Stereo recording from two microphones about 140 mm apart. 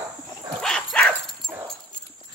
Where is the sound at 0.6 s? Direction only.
5° left (ahead or behind).